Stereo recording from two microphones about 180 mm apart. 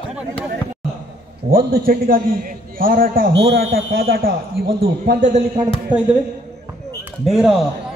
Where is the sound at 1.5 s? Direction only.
55° right (ahead or behind).